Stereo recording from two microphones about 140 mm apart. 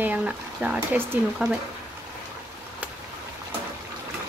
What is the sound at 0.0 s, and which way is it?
Speech, 10° right (ahead or behind).